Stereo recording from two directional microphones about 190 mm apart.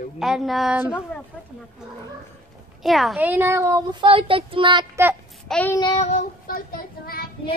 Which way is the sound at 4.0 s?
30° right (ahead or behind).